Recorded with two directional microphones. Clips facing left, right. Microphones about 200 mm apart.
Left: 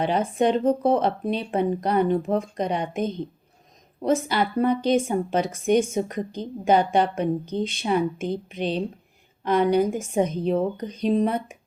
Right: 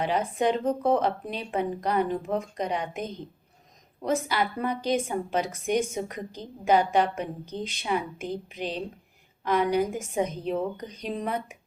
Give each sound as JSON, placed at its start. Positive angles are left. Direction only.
{"t": 0.0, "sound": "a woman's voice", "side_deg": 25}
{"t": 9.4, "sound": "a woman's voice", "side_deg": 30}